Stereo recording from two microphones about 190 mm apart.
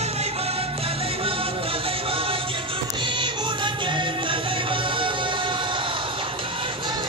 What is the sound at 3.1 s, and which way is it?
Music, 25° right (ahead or behind).